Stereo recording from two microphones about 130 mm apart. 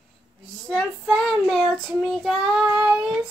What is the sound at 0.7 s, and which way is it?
Child singing, 5° left (ahead or behind).